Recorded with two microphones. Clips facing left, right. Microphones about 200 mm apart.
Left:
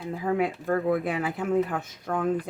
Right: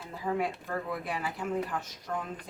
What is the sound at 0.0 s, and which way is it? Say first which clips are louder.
Speech: left 6 dB; 60° left (ahead or behind).